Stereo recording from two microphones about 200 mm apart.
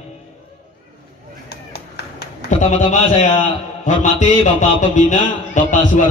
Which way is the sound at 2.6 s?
35° left (ahead or behind).